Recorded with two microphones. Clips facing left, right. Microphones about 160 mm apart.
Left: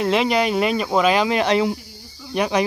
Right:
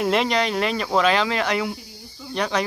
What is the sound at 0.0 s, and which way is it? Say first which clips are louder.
Speech: left 2 dB; centre (ahead or behind).